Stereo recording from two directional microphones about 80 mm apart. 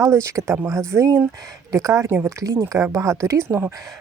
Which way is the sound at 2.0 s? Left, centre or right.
Right.